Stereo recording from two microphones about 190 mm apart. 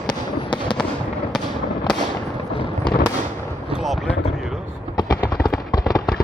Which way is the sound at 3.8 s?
Centre (ahead or behind).